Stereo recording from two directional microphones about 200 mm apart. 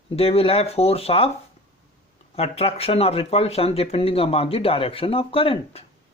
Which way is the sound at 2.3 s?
30° left (ahead or behind).